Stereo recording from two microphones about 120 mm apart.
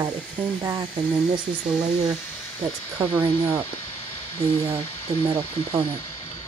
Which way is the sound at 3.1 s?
20° right (ahead or behind).